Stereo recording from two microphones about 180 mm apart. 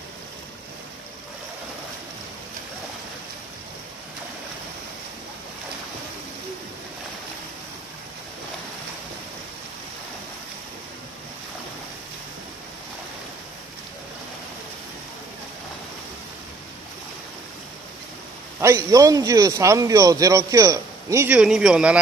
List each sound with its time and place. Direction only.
18.6 s speech: 15° right (ahead or behind)